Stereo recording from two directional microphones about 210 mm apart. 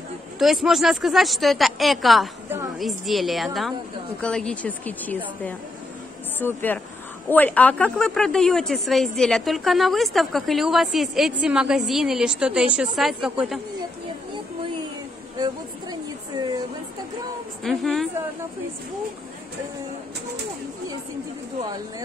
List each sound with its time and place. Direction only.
0.4 s a woman's voice: centre (ahead or behind)
15.3 s speech: 20° right (ahead or behind)
17.6 s speech: centre (ahead or behind)